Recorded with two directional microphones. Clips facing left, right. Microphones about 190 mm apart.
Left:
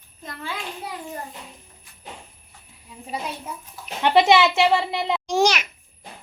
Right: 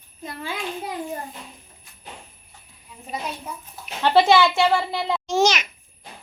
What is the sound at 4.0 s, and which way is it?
A child's voice, 15° left (ahead or behind).